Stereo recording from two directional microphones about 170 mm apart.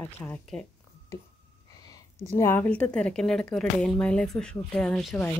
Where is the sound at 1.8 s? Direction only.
20° left (ahead or behind).